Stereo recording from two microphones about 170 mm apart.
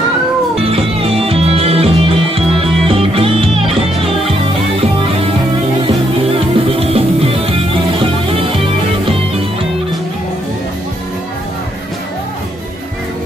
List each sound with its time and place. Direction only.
0.7 s music: 35° right (ahead or behind)
6.7 s music: 35° right (ahead or behind)